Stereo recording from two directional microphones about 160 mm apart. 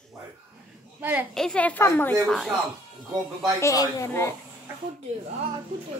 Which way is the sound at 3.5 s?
20° left (ahead or behind).